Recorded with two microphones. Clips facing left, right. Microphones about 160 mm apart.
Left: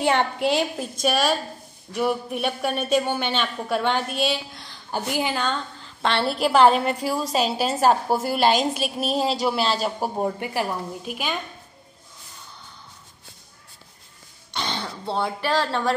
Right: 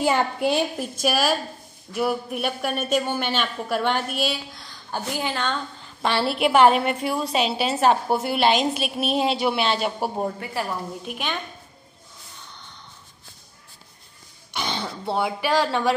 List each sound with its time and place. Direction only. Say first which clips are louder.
0.0 s speech: even; 5° right (ahead or behind)
4.9 s a woman's voice: left 2 dB; 10° left (ahead or behind)
6.7 s a woman's voice: even; 35° left (ahead or behind)
9.8 s speech: even; 10° right (ahead or behind)
10.4 s a woman's voice: left 2 dB; 15° left (ahead or behind)
11.1 s speech: left 1 dB; 5° left (ahead or behind)
14.5 s throat clearing: right 1 dB; 15° right (ahead or behind)